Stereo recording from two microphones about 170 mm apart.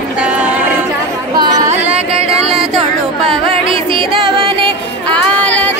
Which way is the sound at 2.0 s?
40° right (ahead or behind).